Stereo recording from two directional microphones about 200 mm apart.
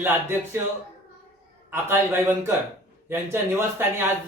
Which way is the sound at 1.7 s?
10° right (ahead or behind).